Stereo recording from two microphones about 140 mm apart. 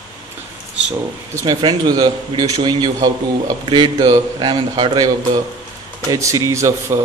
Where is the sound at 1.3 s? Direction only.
30° right (ahead or behind).